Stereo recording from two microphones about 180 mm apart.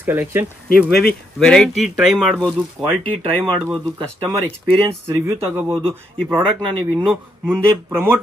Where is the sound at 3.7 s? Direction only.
25° right (ahead or behind).